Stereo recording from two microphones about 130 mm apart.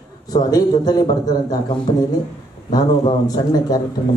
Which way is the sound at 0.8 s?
30° left (ahead or behind).